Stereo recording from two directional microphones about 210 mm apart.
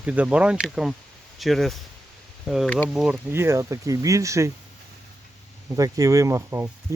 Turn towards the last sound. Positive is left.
turn(degrees=-15)  # may be behind; listen again after turning